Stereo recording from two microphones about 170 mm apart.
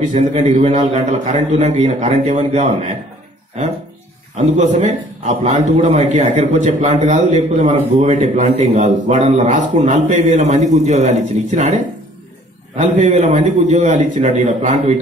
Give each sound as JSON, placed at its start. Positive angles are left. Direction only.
{"t": 0.0, "sound": "a man's voice", "side_deg": -45}
{"t": 4.6, "sound": "a man's voice", "side_deg": -40}